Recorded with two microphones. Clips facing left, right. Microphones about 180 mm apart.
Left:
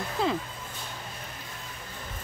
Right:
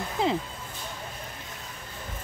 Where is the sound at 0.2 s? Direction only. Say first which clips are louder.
Right 1 dB; 20° right (ahead or behind).